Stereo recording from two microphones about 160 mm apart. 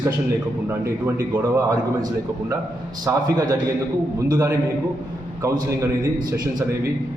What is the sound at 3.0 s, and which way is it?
A man's voice, 25° right (ahead or behind).